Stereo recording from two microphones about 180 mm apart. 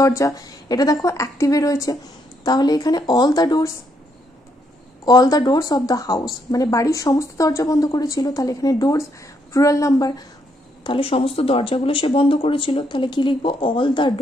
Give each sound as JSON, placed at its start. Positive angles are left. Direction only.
{"t": 0.0, "sound": "a woman's voice", "side_deg": 15}
{"t": 5.0, "sound": "a woman's voice", "side_deg": 20}
{"t": 10.8, "sound": "a woman's voice", "side_deg": 30}